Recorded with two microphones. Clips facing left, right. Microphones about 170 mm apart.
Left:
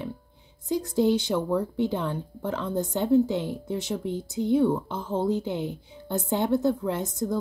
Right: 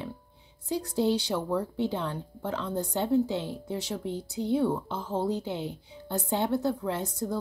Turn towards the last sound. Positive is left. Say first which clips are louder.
# left 3 dB
turn(degrees=15)  # may be behind; listen again after turning